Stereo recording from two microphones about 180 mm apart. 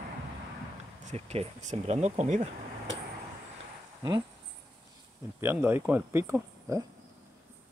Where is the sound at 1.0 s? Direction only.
35° right (ahead or behind).